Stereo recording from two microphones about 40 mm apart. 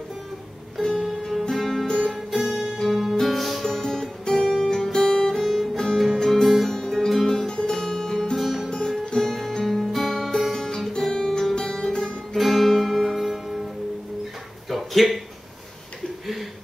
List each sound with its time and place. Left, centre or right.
0.9 s music: centre
7.3 s music: centre
7.8 s music: centre
10.5 s guitar: centre
11.5 s music: centre
12.4 s music: centre
14.7 s a sound: centre